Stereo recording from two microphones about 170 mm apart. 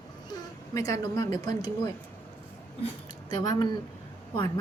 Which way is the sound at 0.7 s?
20° left (ahead or behind).